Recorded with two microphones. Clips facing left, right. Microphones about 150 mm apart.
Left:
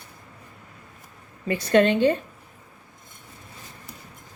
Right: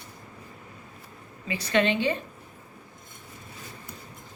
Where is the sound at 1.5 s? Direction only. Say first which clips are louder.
Left 6 dB; 50° left (ahead or behind).